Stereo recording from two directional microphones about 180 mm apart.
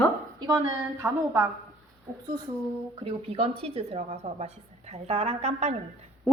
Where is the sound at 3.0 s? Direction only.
30° right (ahead or behind).